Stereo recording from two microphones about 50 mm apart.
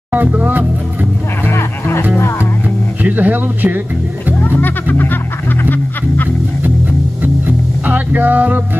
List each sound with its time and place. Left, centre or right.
0.1 s speech: right
1.4 s music: left
3.0 s speech: right
4.4 s speech: left
7.2 s music: right